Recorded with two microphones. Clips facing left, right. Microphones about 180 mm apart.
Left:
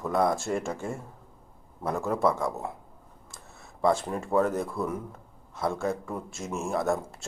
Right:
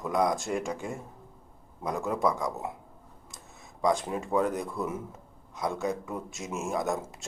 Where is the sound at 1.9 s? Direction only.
Centre (ahead or behind).